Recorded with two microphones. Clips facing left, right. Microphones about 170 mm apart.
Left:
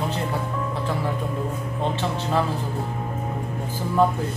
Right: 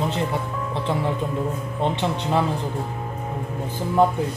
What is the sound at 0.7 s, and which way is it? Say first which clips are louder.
Speech: right 5 dB; 25° right (ahead or behind).